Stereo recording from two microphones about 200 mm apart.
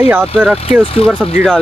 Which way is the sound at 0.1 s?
10° right (ahead or behind).